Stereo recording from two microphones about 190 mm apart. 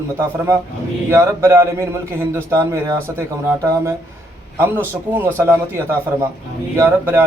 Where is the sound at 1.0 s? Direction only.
15° right (ahead or behind).